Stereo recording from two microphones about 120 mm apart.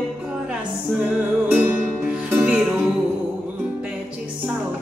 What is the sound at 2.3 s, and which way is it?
Music, 15° right (ahead or behind).